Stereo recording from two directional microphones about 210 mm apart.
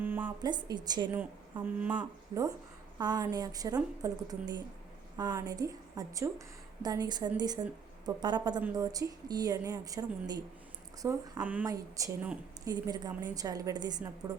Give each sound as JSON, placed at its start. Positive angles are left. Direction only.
{"t": 0.0, "sound": "a sound", "side_deg": -10}
{"t": 0.4, "sound": "speech", "side_deg": -20}
{"t": 1.6, "sound": "a woman's voice", "side_deg": -5}
{"t": 3.0, "sound": "a woman's voice", "side_deg": -20}